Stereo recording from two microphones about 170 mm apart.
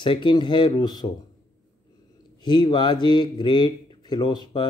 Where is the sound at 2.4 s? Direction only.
25° left (ahead or behind).